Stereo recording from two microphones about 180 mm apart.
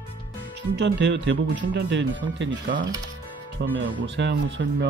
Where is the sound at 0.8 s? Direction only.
80° right.